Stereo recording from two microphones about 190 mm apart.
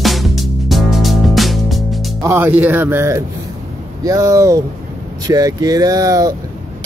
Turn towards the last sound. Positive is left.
turn(degrees=-20)  # may be behind; listen again after turning